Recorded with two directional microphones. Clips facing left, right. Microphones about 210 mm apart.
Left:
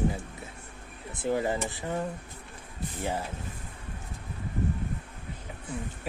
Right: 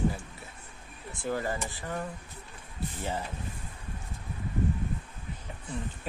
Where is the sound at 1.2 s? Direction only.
20° left (ahead or behind).